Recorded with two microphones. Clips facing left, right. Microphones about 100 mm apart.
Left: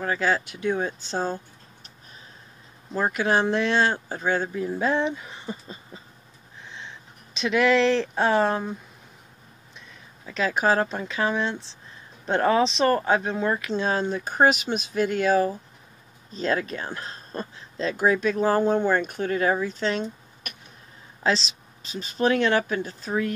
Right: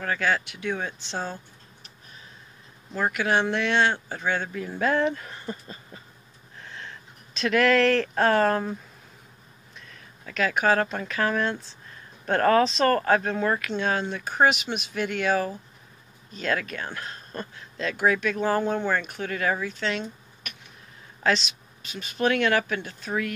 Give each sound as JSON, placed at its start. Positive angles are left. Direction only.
{"t": 0.0, "sound": "speech", "side_deg": 25}
{"t": 3.0, "sound": "speech", "side_deg": 30}
{"t": 4.7, "sound": "speech", "side_deg": 20}
{"t": 6.6, "sound": "a sound", "side_deg": 20}
{"t": 9.8, "sound": "speech", "side_deg": 20}
{"t": 19.3, "sound": "speech", "side_deg": 30}